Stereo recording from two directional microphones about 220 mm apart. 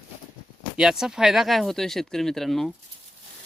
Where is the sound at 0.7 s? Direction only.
Centre (ahead or behind).